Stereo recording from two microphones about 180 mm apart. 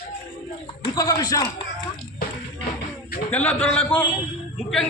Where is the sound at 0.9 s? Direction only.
20° left (ahead or behind).